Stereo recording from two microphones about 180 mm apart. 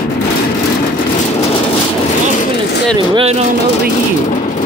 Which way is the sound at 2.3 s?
45° left (ahead or behind).